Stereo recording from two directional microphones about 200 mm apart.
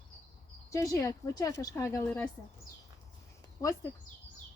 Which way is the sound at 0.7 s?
15° left (ahead or behind).